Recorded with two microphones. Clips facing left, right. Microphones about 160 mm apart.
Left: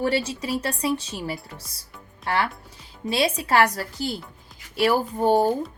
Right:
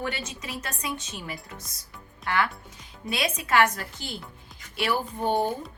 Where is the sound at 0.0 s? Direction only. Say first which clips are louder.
Left 9 dB; 35° left (ahead or behind).